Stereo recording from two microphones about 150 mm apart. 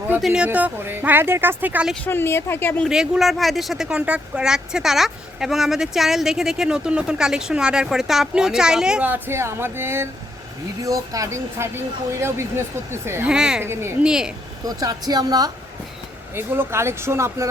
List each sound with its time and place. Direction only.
0.2 s speech: 5° right (ahead or behind)
2.0 s speech: 15° left (ahead or behind)
2.9 s speech: 5° right (ahead or behind)
13.3 s speech: 5° right (ahead or behind)
13.6 s speech: 15° right (ahead or behind)
14.0 s speech: 5° right (ahead or behind)
14.7 s speech: 25° right (ahead or behind)
16.3 s speech: 15° right (ahead or behind)